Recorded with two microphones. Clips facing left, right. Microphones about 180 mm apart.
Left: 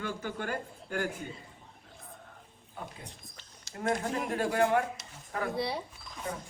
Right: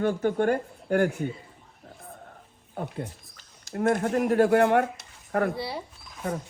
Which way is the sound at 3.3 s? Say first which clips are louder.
Right 14 dB; 55° right (ahead or behind).